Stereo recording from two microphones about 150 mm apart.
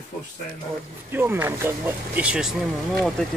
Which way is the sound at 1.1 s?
15° right (ahead or behind).